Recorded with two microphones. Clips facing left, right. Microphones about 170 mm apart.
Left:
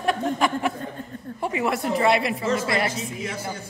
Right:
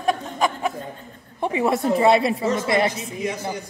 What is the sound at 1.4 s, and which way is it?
A woman's voice, 25° right (ahead or behind).